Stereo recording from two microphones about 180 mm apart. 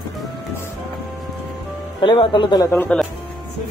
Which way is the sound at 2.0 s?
25° left (ahead or behind).